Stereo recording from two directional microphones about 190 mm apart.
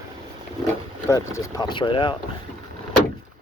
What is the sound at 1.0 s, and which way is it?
Speech, 15° left (ahead or behind).